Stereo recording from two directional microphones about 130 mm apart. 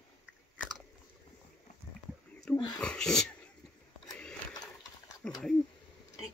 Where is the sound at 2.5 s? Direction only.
30° left (ahead or behind).